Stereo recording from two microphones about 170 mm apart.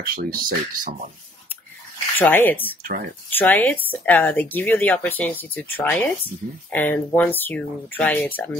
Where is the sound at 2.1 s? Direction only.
10° left (ahead or behind).